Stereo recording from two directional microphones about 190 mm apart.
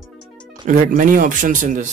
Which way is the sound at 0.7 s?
45° right (ahead or behind).